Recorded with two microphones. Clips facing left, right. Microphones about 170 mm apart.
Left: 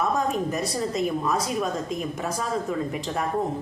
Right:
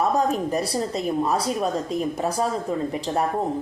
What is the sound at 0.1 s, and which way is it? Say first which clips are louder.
A woman's voice: right 3 dB; 35° right (ahead or behind).